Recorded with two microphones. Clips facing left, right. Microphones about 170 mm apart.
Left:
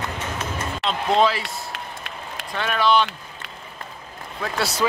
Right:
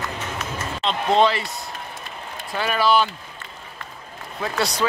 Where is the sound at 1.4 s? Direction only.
80° left.